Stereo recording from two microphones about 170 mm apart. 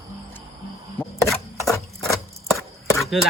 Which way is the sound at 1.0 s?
10° left (ahead or behind).